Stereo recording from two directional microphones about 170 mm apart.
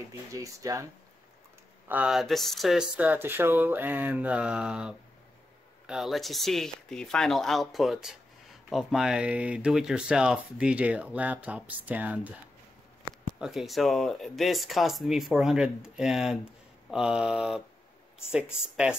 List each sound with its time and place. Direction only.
0.3 s speech: 20° right (ahead or behind)
1.9 s speech: 5° right (ahead or behind)
13.4 s speech: centre (ahead or behind)